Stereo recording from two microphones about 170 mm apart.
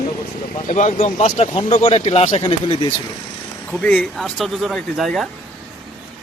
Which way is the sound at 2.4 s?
30° left (ahead or behind).